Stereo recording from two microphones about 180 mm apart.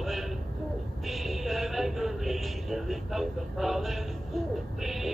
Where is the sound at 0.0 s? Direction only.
Centre (ahead or behind).